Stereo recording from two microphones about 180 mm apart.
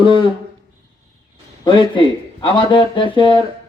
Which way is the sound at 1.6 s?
25° left (ahead or behind).